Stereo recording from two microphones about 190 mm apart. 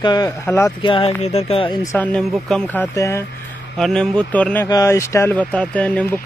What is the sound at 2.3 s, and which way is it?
Speech, centre (ahead or behind).